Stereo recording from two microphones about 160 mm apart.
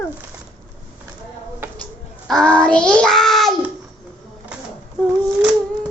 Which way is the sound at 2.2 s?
5° left (ahead or behind).